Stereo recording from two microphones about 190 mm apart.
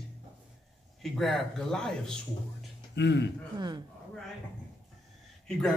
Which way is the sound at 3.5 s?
20° right (ahead or behind).